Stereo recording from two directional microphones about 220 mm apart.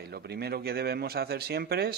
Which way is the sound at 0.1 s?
45° right (ahead or behind).